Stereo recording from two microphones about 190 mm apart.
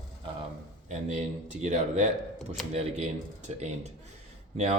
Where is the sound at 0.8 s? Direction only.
40° right (ahead or behind).